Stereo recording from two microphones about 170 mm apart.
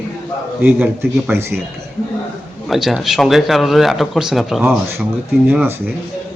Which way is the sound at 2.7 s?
Centre (ahead or behind).